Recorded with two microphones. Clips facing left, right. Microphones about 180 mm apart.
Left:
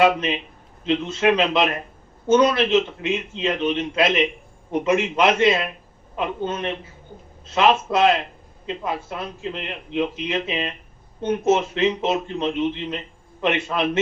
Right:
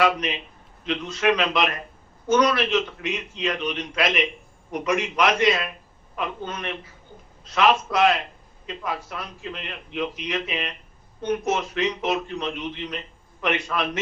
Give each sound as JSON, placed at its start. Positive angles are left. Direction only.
{"t": 0.0, "sound": "a man's voice", "side_deg": 25}